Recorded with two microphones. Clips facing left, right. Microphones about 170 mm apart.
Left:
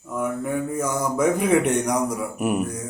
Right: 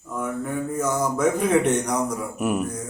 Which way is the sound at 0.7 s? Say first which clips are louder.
Right 1 dB; 10° left (ahead or behind).